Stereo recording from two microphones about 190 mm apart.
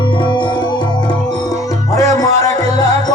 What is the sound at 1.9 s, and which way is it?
Music, 15° left (ahead or behind).